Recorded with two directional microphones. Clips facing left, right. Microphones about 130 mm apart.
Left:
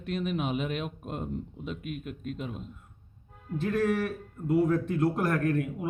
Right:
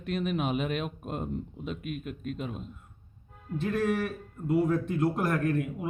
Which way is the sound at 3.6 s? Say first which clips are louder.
Left 1 dB; 20° right (ahead or behind).